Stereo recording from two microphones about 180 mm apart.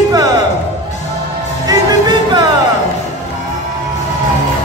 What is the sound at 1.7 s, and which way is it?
Music, 25° right (ahead or behind).